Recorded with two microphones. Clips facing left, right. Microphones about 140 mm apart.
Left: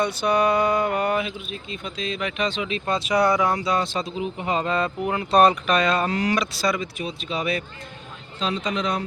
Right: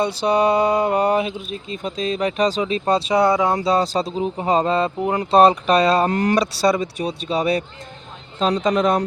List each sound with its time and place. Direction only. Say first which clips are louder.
0.0 s speech: right 3 dB; 30° right (ahead or behind)
3.5 s speech: right 5 dB; 35° right (ahead or behind)
6.1 s a man's voice: right 4 dB; 50° right (ahead or behind)
6.3 s a man's voice: right 6 dB; 35° right (ahead or behind)